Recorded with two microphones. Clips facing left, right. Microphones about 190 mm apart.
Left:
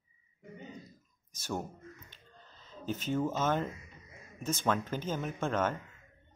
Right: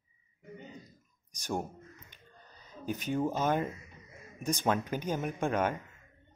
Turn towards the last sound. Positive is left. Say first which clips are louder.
# right 1 dB
turn(degrees=-15)  # may be behind; listen again after turning